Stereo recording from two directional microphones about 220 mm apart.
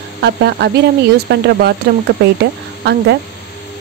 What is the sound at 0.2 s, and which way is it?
Speech, 50° right (ahead or behind).